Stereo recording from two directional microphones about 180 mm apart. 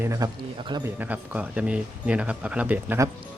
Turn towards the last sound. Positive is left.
turn(degrees=-15)  # may be behind; listen again after turning